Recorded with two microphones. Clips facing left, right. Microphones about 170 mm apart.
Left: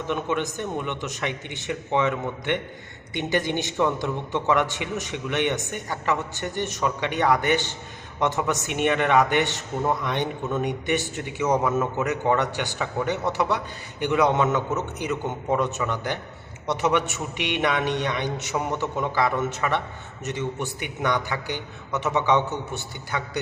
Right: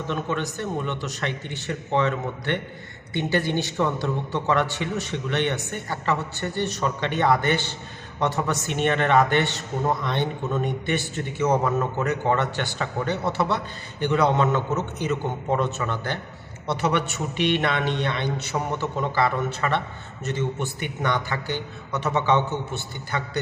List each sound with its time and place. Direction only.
0.1 s a man's voice: 15° left (ahead or behind)
18.5 s a man's voice: 5° left (ahead or behind)
19.1 s a man's voice: 15° left (ahead or behind)